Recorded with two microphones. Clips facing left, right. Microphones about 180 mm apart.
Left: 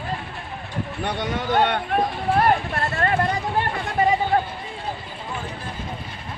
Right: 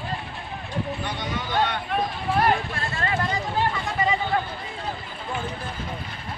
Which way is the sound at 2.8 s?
60° left (ahead or behind).